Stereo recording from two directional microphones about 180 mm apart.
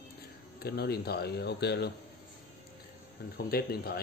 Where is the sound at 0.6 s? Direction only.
60° left (ahead or behind).